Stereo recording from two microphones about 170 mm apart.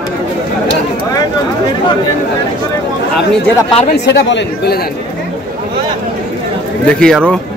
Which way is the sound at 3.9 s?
85° left.